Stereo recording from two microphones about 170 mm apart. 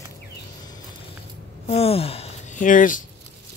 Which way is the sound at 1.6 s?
35° left (ahead or behind).